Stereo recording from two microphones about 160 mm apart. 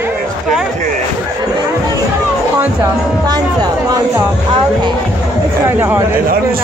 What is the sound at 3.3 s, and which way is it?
Music, 25° right (ahead or behind).